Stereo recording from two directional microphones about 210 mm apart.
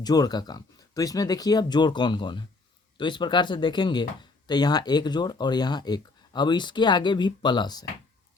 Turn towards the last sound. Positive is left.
turn(degrees=20)  # may be behind; listen again after turning